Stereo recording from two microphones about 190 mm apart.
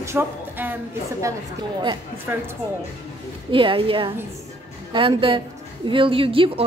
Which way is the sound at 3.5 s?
25° right (ahead or behind).